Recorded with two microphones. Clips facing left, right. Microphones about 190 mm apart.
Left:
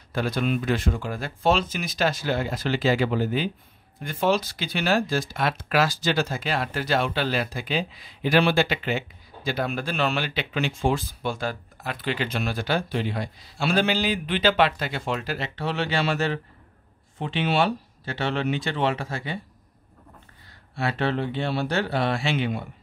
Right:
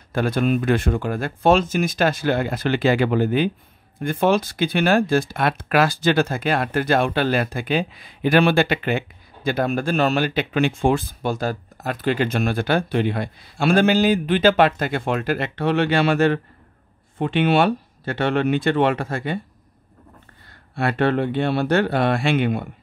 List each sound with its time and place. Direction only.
0.1 s speech: 50° right (ahead or behind)
20.7 s speech: 55° right (ahead or behind)